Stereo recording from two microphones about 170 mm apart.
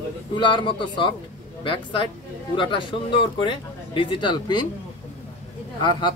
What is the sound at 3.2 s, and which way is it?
Speech, 30° left (ahead or behind).